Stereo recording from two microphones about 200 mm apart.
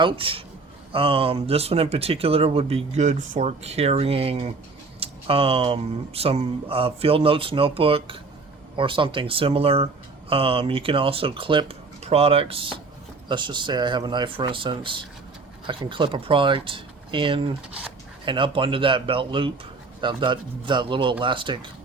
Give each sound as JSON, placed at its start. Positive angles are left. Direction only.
{"t": 0.0, "sound": "speech", "side_deg": -25}